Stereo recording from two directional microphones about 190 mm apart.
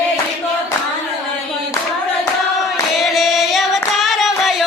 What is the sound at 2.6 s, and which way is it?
Singing, centre (ahead or behind).